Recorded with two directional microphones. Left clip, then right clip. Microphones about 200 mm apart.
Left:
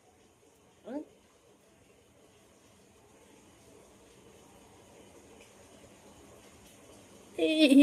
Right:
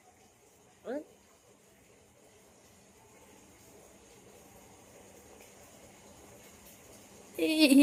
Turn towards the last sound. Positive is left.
turn(degrees=-5)  # may be behind; listen again after turning